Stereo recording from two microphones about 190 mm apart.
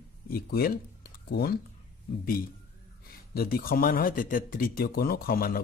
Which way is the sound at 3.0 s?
50° left (ahead or behind).